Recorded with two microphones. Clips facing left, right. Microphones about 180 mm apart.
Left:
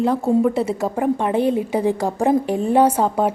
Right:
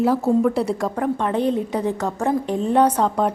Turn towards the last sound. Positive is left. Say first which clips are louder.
# left 1 dB
turn(degrees=5)  # may be behind; listen again after turning